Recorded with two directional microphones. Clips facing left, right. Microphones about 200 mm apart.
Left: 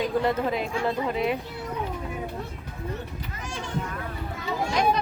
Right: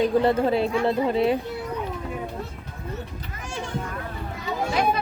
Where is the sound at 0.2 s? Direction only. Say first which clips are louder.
Right 5 dB; 30° right (ahead or behind).